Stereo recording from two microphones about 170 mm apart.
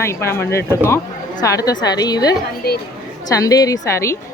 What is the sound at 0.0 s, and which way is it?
A woman's voice, 15° left (ahead or behind).